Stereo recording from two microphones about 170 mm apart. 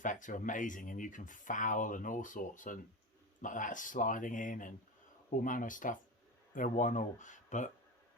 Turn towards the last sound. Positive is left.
turn(degrees=45)  # may be behind; listen again after turning